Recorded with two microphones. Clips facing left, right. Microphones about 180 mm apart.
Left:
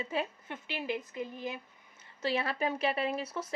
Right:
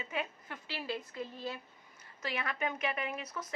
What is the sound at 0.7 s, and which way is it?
Speech, 20° left (ahead or behind).